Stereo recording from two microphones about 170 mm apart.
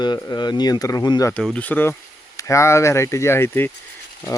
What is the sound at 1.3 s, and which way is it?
Speech, 5° left (ahead or behind).